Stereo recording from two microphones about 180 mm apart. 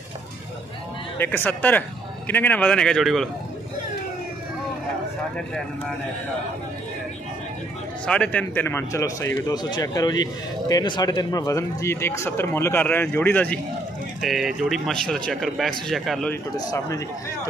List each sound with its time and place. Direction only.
1.1 s a man's voice: 10° left (ahead or behind)
8.1 s a man's voice: 5° left (ahead or behind)
14.2 s a man's voice: centre (ahead or behind)
16.5 s speech: 20° left (ahead or behind)